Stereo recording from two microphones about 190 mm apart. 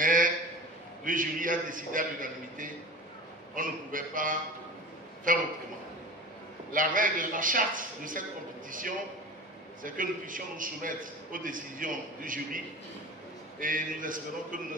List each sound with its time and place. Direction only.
0.0 s a sound: 45° right (ahead or behind)
1.0 s a man's voice: 45° right (ahead or behind)
6.7 s a man's voice: 45° right (ahead or behind)